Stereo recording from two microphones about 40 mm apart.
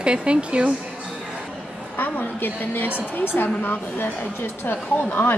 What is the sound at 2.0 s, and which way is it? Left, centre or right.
A woman's voice, left.